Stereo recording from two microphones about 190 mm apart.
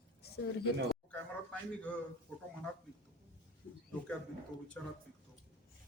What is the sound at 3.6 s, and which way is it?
Speech, 45° left (ahead or behind).